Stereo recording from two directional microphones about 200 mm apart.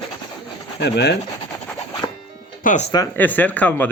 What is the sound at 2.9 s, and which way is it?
Speech, 15° left (ahead or behind).